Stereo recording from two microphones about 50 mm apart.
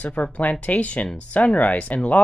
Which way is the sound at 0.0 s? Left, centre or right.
Left.